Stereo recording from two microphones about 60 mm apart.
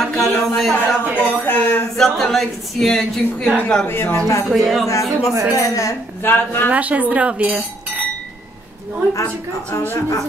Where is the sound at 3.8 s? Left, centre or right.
Left.